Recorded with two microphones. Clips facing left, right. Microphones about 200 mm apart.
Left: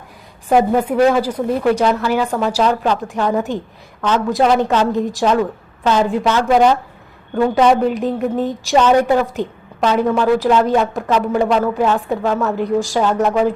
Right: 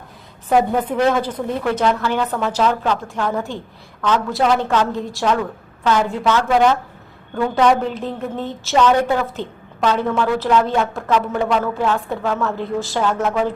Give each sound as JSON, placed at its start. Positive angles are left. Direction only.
{"t": 0.4, "sound": "a woman's voice", "side_deg": 10}